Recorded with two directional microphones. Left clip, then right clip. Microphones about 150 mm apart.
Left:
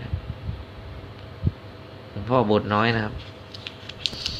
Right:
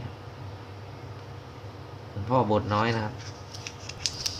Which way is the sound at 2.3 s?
30° left (ahead or behind).